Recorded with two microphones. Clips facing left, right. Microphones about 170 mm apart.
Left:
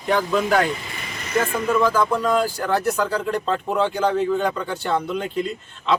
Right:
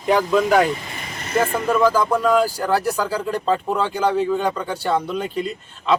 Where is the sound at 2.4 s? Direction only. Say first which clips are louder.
Right 2 dB; 35° right (ahead or behind).